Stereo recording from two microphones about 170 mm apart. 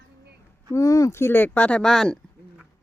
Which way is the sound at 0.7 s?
20° left (ahead or behind).